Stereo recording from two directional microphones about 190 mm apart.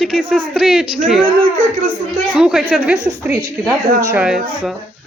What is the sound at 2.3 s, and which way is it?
A woman's voice, 5° right (ahead or behind).